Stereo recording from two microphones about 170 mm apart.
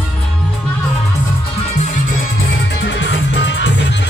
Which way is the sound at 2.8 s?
90° left.